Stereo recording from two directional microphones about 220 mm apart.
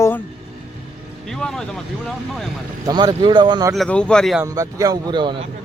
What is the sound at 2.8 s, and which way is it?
Speech, 20° right (ahead or behind).